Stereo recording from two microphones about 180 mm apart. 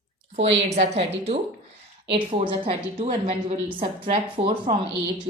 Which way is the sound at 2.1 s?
30° right (ahead or behind).